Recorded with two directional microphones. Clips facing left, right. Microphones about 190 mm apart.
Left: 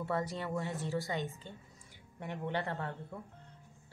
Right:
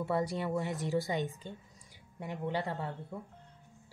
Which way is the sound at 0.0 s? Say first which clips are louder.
Right 3 dB; 10° right (ahead or behind).